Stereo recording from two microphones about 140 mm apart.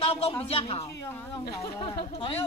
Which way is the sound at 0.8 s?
25° left (ahead or behind).